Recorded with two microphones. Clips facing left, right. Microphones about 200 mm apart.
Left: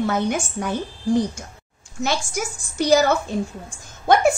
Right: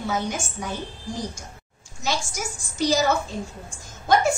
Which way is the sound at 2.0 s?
60° left (ahead or behind).